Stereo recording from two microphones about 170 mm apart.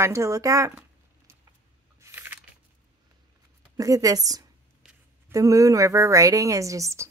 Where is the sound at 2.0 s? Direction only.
15° right (ahead or behind).